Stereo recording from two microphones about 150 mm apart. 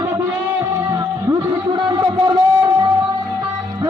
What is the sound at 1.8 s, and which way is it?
Music, 30° right (ahead or behind).